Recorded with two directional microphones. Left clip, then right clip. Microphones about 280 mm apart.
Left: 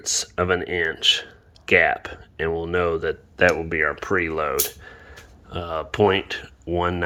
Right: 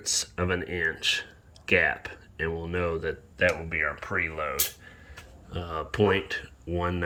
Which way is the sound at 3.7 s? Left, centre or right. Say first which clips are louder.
Left 7 dB; left.